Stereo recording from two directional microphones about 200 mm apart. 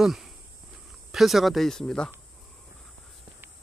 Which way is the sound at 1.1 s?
Centre (ahead or behind).